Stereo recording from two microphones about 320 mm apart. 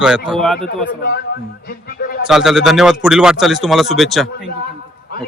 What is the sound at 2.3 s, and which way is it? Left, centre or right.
A man's voice, centre.